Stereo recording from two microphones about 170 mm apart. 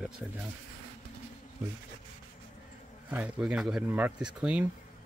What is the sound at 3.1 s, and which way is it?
Speech, 10° right (ahead or behind).